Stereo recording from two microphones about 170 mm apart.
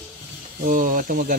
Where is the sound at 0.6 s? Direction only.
50° right (ahead or behind).